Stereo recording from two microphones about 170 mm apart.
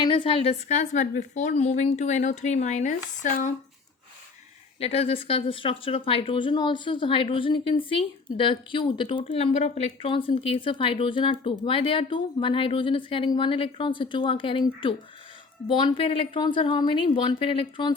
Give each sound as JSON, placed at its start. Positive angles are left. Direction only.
{"t": 0.0, "sound": "speech", "side_deg": 30}
{"t": 4.8, "sound": "speech", "side_deg": 35}